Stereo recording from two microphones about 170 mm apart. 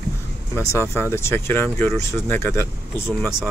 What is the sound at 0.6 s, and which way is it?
Speech, 15° left (ahead or behind).